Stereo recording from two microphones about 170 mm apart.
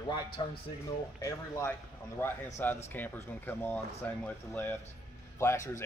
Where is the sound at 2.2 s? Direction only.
10° left (ahead or behind).